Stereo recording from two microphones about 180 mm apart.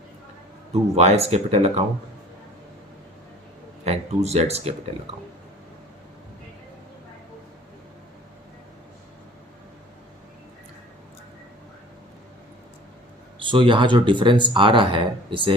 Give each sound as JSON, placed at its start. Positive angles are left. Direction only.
{"t": 0.7, "sound": "speech", "side_deg": -35}
{"t": 3.8, "sound": "speech", "side_deg": -35}
{"t": 13.4, "sound": "speech", "side_deg": -30}